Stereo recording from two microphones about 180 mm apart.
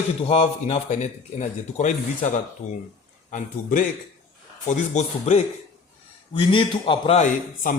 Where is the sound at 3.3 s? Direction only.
45° left (ahead or behind).